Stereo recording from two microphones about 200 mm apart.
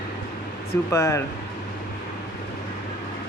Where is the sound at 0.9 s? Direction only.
15° left (ahead or behind).